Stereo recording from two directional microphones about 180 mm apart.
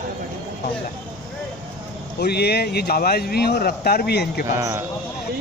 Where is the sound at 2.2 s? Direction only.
65° left (ahead or behind).